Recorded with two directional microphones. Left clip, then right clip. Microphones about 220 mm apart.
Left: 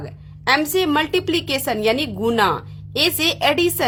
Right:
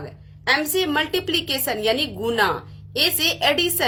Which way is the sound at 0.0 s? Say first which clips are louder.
Left 3 dB; 30° left (ahead or behind).